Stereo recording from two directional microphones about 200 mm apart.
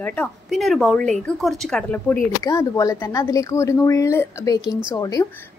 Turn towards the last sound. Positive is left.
turn(degrees=20)  # may be behind; listen again after turning